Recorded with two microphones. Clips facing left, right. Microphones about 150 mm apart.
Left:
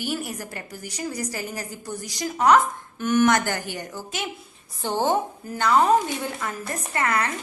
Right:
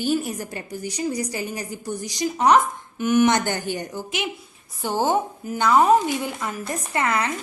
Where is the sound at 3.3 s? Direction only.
25° right (ahead or behind).